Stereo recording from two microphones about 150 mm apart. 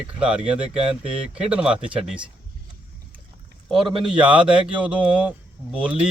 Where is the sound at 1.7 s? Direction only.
35° right (ahead or behind).